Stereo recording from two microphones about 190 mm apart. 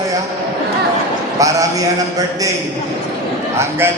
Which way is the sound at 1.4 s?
15° right (ahead or behind).